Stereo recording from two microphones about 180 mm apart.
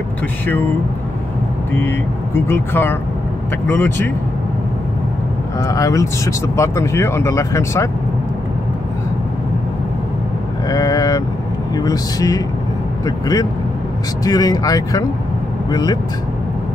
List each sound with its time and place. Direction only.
1.7 s speech: 10° left (ahead or behind)
5.6 s speech: 20° left (ahead or behind)
10.7 s speech: 20° left (ahead or behind)